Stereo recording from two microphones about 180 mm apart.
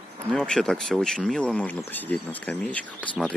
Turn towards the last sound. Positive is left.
turn(degrees=5)  # may be behind; listen again after turning